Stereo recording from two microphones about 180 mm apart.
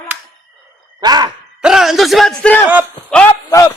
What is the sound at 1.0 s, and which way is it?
Speech, 25° right (ahead or behind).